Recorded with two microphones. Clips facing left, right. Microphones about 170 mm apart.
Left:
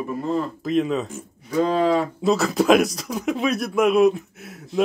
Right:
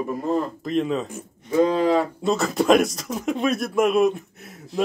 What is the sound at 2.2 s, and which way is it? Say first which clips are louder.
Speech: left 3 dB; centre (ahead or behind).